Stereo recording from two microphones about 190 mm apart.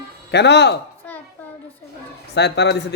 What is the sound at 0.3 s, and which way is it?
Speech, 65° left (ahead or behind).